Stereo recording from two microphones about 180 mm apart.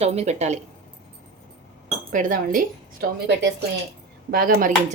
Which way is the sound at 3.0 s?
60° right (ahead or behind).